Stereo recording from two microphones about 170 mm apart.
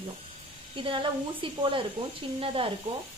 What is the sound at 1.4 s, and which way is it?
A woman's voice, 30° right (ahead or behind).